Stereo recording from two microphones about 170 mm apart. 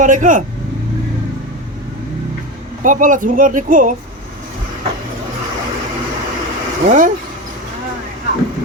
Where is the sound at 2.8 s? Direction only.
50° right (ahead or behind).